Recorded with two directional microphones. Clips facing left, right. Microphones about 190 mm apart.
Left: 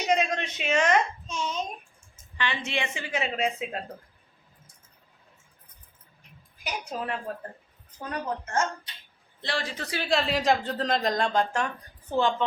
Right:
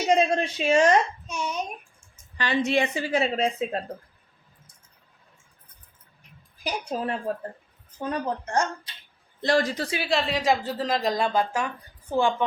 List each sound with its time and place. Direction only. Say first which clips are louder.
0.0 s a woman's voice: right 4 dB; 30° right (ahead or behind)
1.3 s a child's voice: right 1 dB; 10° right (ahead or behind)
2.4 s a woman's voice: right 7 dB; 40° right (ahead or behind)
6.7 s a woman's voice: right 4 dB; 30° right (ahead or behind)
9.4 s speech: right 9 dB; 45° right (ahead or behind)
10.0 s a woman's voice: left 1 dB; centre (ahead or behind)